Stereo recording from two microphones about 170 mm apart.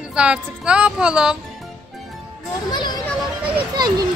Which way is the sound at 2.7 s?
25° left (ahead or behind).